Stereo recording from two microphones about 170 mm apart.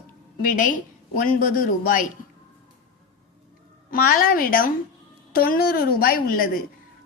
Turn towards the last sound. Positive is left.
turn(degrees=60)  # may be behind; listen again after turning